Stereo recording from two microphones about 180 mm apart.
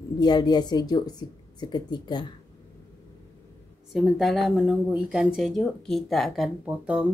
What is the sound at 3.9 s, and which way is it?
Speech, centre (ahead or behind).